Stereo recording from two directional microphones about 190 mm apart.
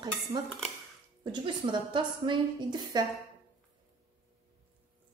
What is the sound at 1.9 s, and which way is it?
A woman's voice, 25° right (ahead or behind).